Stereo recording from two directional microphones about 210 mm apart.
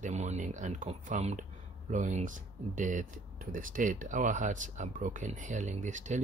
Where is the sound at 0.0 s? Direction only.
35° right (ahead or behind).